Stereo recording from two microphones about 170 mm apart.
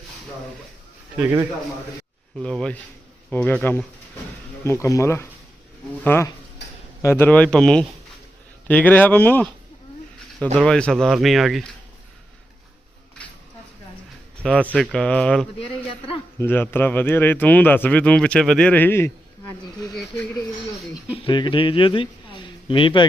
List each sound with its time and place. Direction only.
1.1 s a man's voice: 15° right (ahead or behind)
2.4 s speech: 5° left (ahead or behind)
10.6 s speech: 5° left (ahead or behind)
13.2 s a sound: 5° left (ahead or behind)
14.4 s speech: 5° left (ahead or behind)
15.5 s speech: 35° left (ahead or behind)
16.4 s speech: 15° left (ahead or behind)
19.9 s speech: centre (ahead or behind)
21.2 s a man's voice: 30° left (ahead or behind)